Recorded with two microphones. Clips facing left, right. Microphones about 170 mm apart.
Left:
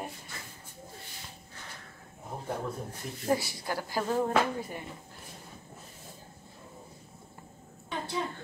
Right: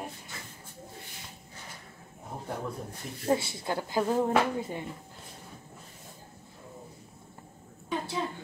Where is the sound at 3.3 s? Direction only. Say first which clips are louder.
Right 2 dB; 25° right (ahead or behind).